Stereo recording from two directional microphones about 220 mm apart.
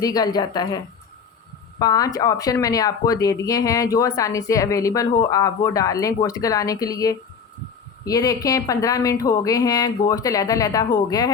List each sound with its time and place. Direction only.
0.0 s speech: 15° left (ahead or behind)
1.8 s speech: 15° left (ahead or behind)